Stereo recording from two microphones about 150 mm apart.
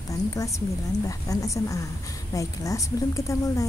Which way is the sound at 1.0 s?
20° left (ahead or behind).